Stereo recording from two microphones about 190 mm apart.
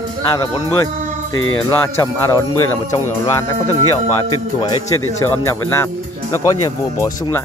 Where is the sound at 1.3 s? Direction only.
90° left.